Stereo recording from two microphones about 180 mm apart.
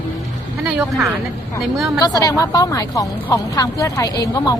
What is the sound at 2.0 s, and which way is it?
A woman's voice, 20° left (ahead or behind).